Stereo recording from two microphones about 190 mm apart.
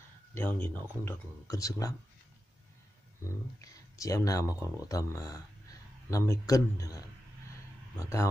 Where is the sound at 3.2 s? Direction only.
15° left (ahead or behind).